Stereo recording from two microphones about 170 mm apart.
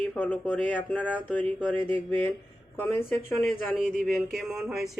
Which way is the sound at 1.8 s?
30° right (ahead or behind).